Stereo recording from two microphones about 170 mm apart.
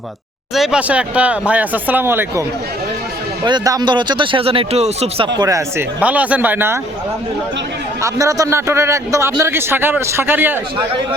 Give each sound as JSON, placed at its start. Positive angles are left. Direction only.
{"t": 0.5, "sound": "a man's voice", "side_deg": -5}
{"t": 3.4, "sound": "speech", "side_deg": -25}
{"t": 5.4, "sound": "a man's voice", "side_deg": -20}
{"t": 8.0, "sound": "a man's voice", "side_deg": -20}